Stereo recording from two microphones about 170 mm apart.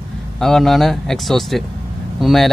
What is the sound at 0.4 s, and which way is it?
Speech, centre (ahead or behind).